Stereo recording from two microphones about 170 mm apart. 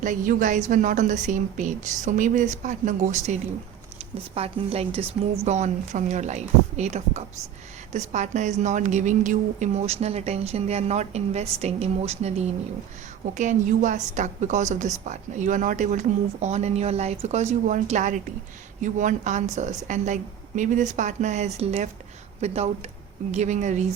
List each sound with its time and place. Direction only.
0.0 s a woman's voice: 50° right (ahead or behind)
4.4 s a woman's voice: 35° right (ahead or behind)